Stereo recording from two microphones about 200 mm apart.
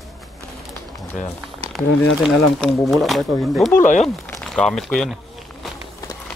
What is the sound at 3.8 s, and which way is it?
Speech, 40° left (ahead or behind).